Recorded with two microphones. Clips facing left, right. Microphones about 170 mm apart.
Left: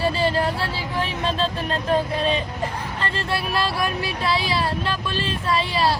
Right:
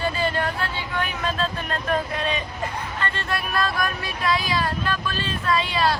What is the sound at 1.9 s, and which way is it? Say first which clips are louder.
Speech: left 4 dB; 30° left (ahead or behind).